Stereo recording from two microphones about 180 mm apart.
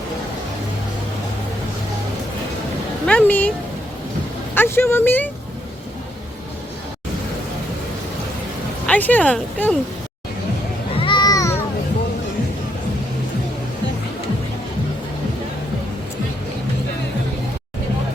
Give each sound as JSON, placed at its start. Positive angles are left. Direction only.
{"t": 3.1, "sound": "speech", "side_deg": 10}
{"t": 4.5, "sound": "speech", "side_deg": 10}
{"t": 8.9, "sound": "speech", "side_deg": 10}
{"t": 10.9, "sound": "a sound", "side_deg": 25}